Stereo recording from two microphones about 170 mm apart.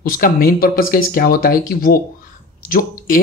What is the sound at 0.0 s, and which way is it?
Speech, 55° left (ahead or behind).